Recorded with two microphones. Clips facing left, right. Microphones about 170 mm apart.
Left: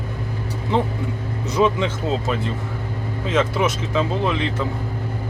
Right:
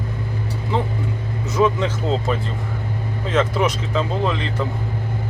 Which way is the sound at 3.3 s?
10° left (ahead or behind).